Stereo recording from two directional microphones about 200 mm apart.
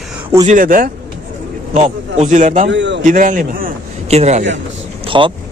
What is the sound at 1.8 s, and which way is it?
Speech, 35° right (ahead or behind).